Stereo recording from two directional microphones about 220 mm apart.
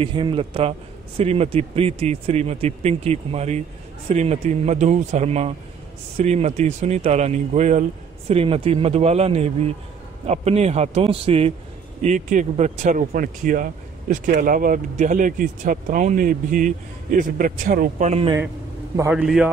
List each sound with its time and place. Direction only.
0.0 s a man's voice: 20° right (ahead or behind)
18.9 s a man's voice: 10° right (ahead or behind)